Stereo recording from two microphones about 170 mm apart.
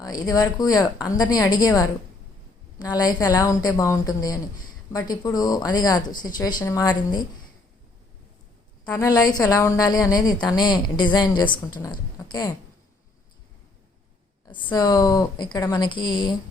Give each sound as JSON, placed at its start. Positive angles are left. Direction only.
{"t": 0.0, "sound": "a woman's voice", "side_deg": 20}
{"t": 8.8, "sound": "a woman's voice", "side_deg": 20}
{"t": 14.4, "sound": "a woman's voice", "side_deg": 25}